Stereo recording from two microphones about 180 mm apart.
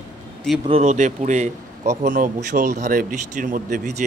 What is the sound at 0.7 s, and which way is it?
A man's voice, 40° right (ahead or behind).